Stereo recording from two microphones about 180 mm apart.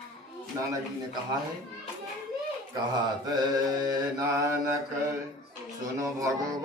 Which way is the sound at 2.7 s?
20° right (ahead or behind).